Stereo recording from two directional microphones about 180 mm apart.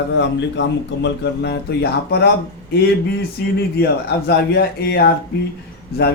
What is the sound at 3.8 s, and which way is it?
Speech, 65° left (ahead or behind).